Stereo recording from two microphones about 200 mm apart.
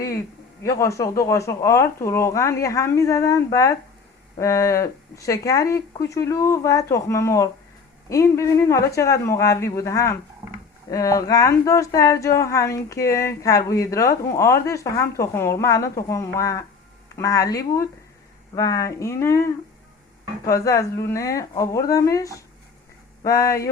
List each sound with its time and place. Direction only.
0.6 s speech: 15° left (ahead or behind)
10.4 s a sound: 10° right (ahead or behind)
10.9 s speech: 15° left (ahead or behind)
20.5 s speech: 15° left (ahead or behind)